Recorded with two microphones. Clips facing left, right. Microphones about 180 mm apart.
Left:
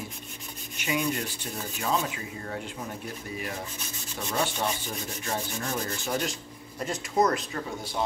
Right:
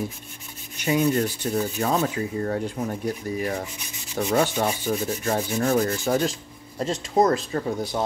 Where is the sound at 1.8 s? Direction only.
45° right (ahead or behind).